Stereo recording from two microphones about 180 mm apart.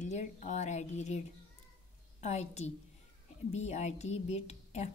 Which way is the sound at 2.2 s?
40° left (ahead or behind).